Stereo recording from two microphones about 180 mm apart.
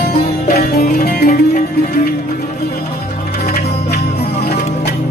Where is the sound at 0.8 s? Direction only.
50° left (ahead or behind).